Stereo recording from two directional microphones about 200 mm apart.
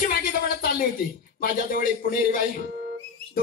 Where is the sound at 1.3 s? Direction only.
45° left (ahead or behind).